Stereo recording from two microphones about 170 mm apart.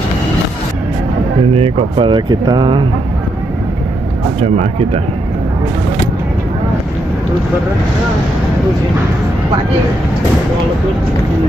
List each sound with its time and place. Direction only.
1.5 s speech: 30° right (ahead or behind)